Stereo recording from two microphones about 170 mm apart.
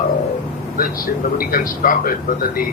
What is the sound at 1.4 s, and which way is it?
Speech, 55° left (ahead or behind).